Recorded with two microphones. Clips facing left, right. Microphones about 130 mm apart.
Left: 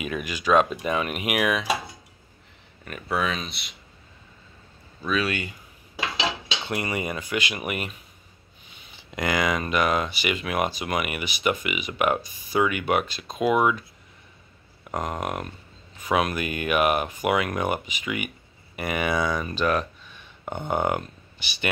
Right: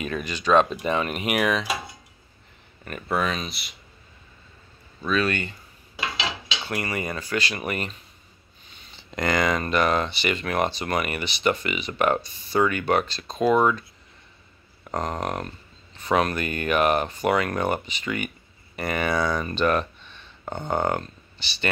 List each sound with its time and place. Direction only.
0.0 s speech: 10° left (ahead or behind)
2.8 s speech: centre (ahead or behind)
5.0 s speech: 10° left (ahead or behind)
6.6 s speech: 20° left (ahead or behind)
14.9 s speech: 5° left (ahead or behind)